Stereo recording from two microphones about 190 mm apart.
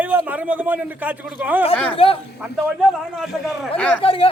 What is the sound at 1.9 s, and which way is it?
Speech, 30° left (ahead or behind).